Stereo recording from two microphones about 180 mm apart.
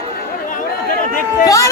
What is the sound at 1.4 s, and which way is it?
Speech, 20° left (ahead or behind).